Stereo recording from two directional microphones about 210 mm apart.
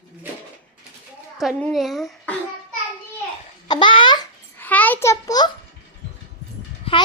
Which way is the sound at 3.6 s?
20° left (ahead or behind).